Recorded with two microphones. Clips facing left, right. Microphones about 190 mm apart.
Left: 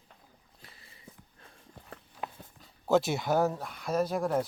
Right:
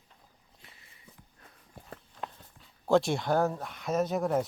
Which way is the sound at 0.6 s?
35° left (ahead or behind).